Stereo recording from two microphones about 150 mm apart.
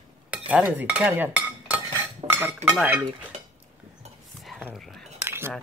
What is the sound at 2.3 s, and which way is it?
Dishes, 15° right (ahead or behind).